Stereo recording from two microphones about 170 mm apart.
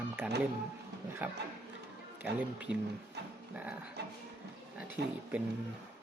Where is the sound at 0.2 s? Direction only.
5° right (ahead or behind).